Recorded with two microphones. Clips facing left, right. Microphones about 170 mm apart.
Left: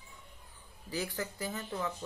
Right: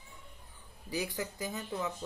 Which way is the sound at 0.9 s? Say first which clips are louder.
Right 1 dB; 15° right (ahead or behind).